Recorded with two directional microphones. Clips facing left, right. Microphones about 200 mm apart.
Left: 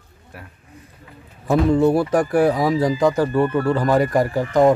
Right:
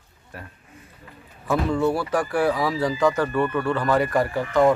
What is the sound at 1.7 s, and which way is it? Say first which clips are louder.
A man's voice: left 7 dB; 20° left (ahead or behind).